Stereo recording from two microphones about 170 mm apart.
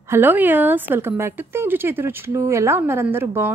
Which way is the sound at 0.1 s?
10° right (ahead or behind).